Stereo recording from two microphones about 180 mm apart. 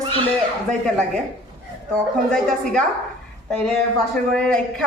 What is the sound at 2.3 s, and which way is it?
Speech, 5° left (ahead or behind).